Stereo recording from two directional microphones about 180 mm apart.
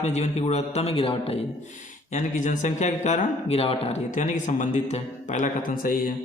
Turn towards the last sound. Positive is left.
turn(degrees=50)  # may be behind; listen again after turning